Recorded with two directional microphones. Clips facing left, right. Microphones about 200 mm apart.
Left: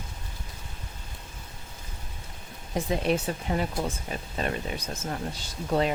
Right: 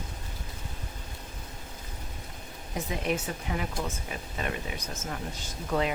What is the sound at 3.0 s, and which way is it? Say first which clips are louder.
Speech: left 4 dB; 35° left (ahead or behind).